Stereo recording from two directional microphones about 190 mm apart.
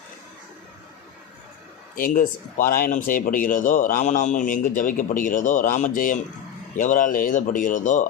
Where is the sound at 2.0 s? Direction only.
45° left (ahead or behind).